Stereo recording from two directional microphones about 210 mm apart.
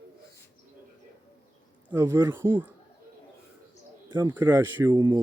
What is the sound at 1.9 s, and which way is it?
Speech, 10° right (ahead or behind).